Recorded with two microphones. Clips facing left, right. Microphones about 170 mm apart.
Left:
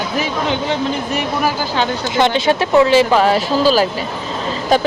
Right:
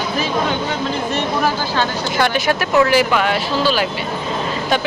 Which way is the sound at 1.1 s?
10° left (ahead or behind).